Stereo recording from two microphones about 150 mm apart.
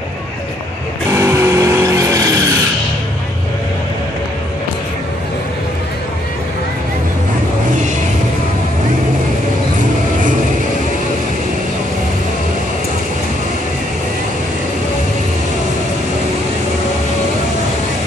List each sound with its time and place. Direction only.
1.1 s vehicle: 20° right (ahead or behind)